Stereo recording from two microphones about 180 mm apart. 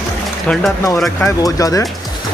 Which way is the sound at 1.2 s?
20° left (ahead or behind).